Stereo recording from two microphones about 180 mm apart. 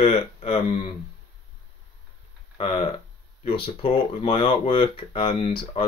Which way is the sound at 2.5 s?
30° left (ahead or behind).